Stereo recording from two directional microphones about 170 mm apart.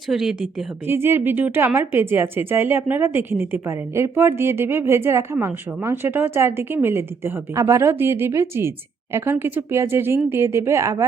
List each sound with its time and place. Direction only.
0.1 s speech: centre (ahead or behind)
0.9 s speech: 15° right (ahead or behind)